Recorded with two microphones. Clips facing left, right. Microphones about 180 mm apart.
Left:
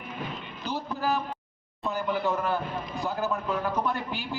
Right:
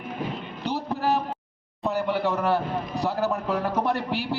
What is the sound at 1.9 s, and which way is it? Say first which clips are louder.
A man's voice: right 3 dB; 70° right (ahead or behind).